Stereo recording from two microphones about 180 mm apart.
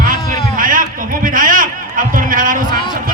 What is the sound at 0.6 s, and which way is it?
A man's voice, 50° right (ahead or behind).